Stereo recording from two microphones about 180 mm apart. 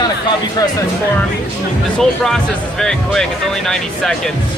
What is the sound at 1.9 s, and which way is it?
Speech, centre (ahead or behind).